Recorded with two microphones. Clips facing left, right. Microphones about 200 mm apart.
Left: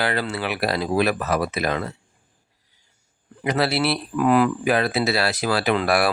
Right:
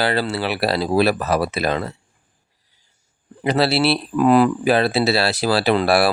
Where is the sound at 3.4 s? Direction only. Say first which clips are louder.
Right 4 dB; 30° right (ahead or behind).